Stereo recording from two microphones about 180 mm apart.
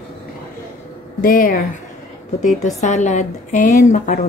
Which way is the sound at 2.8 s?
40° left (ahead or behind).